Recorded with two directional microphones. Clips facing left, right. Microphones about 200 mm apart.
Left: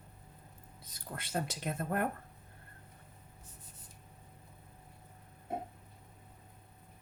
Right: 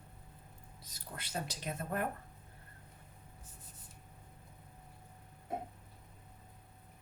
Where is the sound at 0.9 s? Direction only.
50° left (ahead or behind).